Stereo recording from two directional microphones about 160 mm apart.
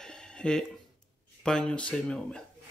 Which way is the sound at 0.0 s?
5° left (ahead or behind).